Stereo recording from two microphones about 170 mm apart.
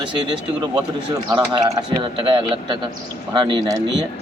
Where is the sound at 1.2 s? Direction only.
25° right (ahead or behind).